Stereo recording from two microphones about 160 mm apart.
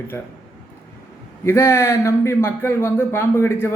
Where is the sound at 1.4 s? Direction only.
15° left (ahead or behind).